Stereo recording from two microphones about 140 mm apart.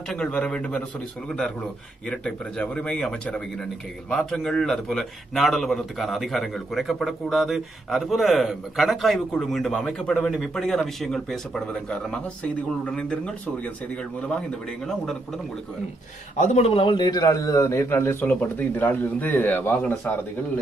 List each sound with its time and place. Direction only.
0.1 s a man's voice: 5° left (ahead or behind)
2.0 s a man's voice: 10° left (ahead or behind)
14.9 s speech: 5° left (ahead or behind)
16.3 s a man's voice: 50° left (ahead or behind); by 20.0 s 15° left (ahead or behind)